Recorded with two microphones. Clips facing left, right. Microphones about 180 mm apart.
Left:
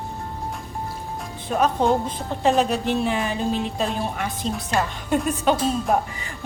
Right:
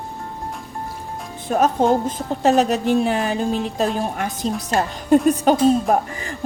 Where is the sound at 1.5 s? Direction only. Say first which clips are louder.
Right 3 dB; 45° right (ahead or behind).